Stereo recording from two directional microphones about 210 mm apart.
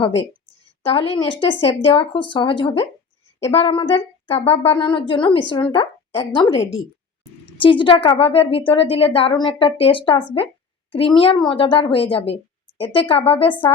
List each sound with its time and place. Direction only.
0.8 s a woman's voice: 25° left (ahead or behind)